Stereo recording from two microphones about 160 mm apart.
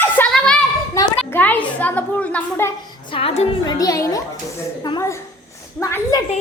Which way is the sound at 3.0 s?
35° left (ahead or behind).